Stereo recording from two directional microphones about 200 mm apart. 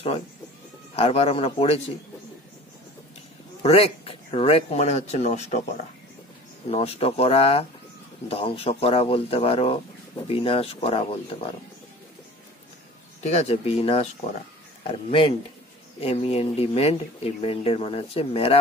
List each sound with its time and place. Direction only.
0.9 s speech: 30° left (ahead or behind)
3.6 s speech: 30° left (ahead or behind)
6.7 s speech: 30° left (ahead or behind)
13.2 s speech: 35° left (ahead or behind)